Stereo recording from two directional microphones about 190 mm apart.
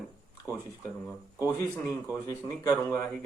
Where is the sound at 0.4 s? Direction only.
10° left (ahead or behind).